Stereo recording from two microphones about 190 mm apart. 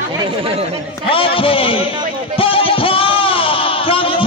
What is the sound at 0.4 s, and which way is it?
Speech, 30° right (ahead or behind).